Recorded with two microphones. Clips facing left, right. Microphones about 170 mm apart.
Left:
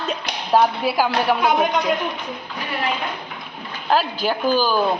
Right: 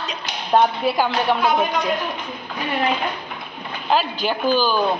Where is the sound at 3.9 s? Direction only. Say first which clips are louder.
Left 1 dB; 5° left (ahead or behind).